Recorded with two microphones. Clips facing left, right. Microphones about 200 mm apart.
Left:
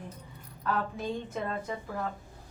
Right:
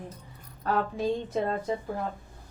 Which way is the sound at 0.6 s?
35° right (ahead or behind).